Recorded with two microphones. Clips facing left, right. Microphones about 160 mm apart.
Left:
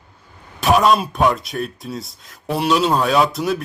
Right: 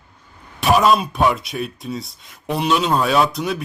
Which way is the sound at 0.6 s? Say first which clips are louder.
Even; centre (ahead or behind).